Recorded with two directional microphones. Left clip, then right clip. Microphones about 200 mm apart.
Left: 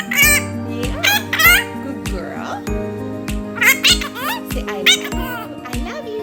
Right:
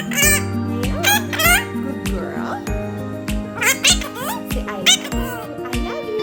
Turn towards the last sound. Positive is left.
turn(degrees=-30)  # may be behind; listen again after turning